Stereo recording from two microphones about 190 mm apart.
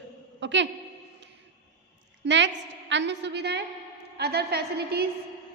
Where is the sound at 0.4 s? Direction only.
70° right (ahead or behind).